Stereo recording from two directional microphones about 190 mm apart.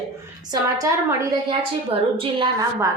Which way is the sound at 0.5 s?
20° right (ahead or behind).